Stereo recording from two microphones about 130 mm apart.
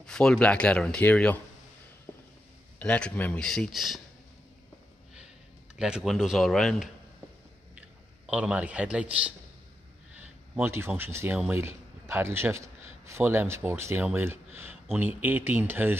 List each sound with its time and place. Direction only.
0.0 s speech: 5° left (ahead or behind)
2.8 s speech: 10° left (ahead or behind)
5.8 s speech: 5° right (ahead or behind)
8.3 s speech: 10° right (ahead or behind)
10.1 s a sound: 15° right (ahead or behind)
11.0 s a man's voice: 20° right (ahead or behind)